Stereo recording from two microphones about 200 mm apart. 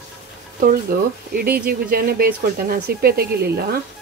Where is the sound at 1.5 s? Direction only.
45° right (ahead or behind).